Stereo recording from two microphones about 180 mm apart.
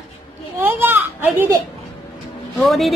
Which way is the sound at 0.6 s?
10° right (ahead or behind).